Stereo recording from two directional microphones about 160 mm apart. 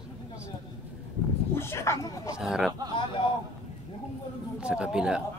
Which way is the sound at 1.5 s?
15° left (ahead or behind).